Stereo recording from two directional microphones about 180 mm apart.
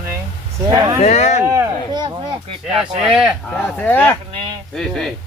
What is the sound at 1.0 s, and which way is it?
Speech, 40° left (ahead or behind).